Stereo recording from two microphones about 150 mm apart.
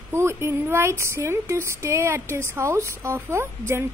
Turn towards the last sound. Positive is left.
turn(degrees=-15)  # may be behind; listen again after turning